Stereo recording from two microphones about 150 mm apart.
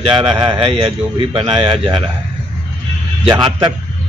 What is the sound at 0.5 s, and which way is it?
A man's voice, 40° right (ahead or behind).